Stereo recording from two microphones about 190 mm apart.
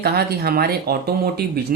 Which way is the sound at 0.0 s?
55° right (ahead or behind).